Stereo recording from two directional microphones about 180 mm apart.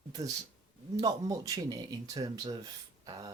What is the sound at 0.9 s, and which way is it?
Speech, 20° right (ahead or behind).